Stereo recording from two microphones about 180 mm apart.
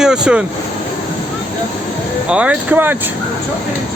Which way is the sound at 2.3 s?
5° right (ahead or behind).